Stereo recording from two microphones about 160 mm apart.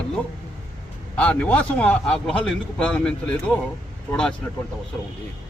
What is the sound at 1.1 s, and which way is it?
A man's voice, 10° left (ahead or behind).